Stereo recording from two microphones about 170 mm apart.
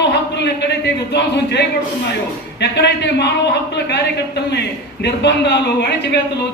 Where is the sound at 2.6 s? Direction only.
80° left.